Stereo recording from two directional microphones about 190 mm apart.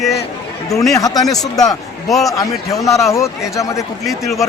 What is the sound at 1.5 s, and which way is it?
Speech, 20° left (ahead or behind).